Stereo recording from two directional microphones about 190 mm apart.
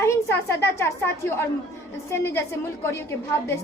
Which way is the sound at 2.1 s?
15° left (ahead or behind).